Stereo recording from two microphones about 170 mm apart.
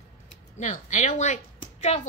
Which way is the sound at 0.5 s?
45° left (ahead or behind).